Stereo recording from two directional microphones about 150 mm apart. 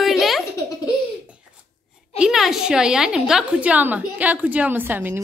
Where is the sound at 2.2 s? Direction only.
5° right (ahead or behind).